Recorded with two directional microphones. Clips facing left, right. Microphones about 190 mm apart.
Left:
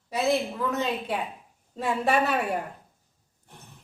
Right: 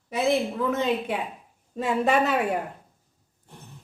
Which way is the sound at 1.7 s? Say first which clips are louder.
Right 2 dB; 20° right (ahead or behind).